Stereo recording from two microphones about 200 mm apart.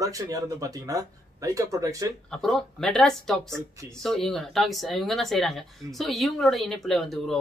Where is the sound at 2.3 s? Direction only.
Centre (ahead or behind).